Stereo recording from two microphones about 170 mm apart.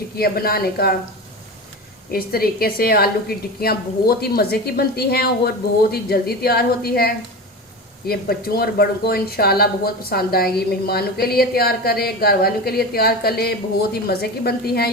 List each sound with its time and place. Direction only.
0.2 s a woman's voice: 65° left (ahead or behind)
2.1 s a woman's voice: 60° left (ahead or behind)